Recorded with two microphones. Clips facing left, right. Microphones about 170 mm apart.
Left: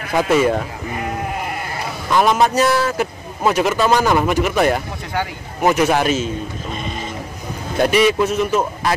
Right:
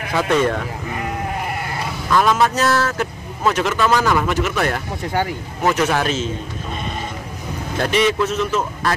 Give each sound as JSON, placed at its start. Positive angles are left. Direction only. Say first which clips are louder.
{"t": 0.1, "sound": "speech", "louder": "left 2 dB", "side_deg": 10}
{"t": 2.0, "sound": "speech", "louder": "left 1 dB", "side_deg": 20}
{"t": 3.9, "sound": "speech", "louder": "left 2 dB", "side_deg": 20}
{"t": 7.8, "sound": "speech", "louder": "left 3 dB", "side_deg": 10}